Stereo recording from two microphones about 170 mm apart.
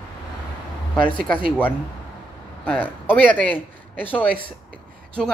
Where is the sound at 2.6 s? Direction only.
10° left (ahead or behind).